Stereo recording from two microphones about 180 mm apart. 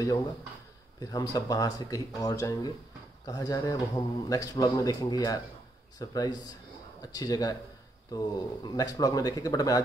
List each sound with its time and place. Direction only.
0.9 s speech: 20° left (ahead or behind)